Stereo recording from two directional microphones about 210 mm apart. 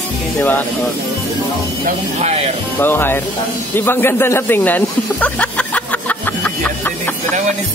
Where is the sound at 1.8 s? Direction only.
30° right (ahead or behind).